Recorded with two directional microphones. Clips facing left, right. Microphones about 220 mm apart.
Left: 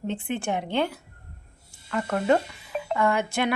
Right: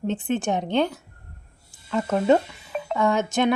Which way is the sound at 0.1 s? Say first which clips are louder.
Right 4 dB; 15° left (ahead or behind).